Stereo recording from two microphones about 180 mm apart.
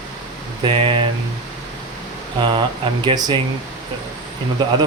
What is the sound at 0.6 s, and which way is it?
Speech, 30° right (ahead or behind).